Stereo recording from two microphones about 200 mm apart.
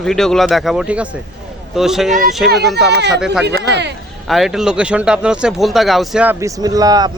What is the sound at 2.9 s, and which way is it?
Speech, 55° right (ahead or behind).